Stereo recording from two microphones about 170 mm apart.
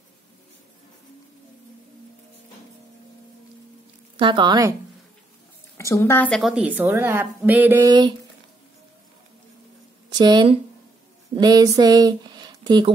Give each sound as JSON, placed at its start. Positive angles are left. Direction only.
{"t": 4.2, "sound": "speech", "side_deg": -30}
{"t": 5.8, "sound": "a woman's voice", "side_deg": 20}
{"t": 10.0, "sound": "speech", "side_deg": -25}